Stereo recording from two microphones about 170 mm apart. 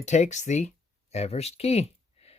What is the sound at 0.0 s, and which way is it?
Speech, 45° left (ahead or behind).